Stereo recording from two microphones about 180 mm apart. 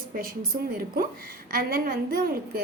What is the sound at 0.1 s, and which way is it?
Speech, 55° right (ahead or behind).